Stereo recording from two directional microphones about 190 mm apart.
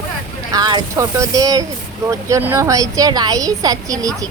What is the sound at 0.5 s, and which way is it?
A woman's voice, 20° right (ahead or behind).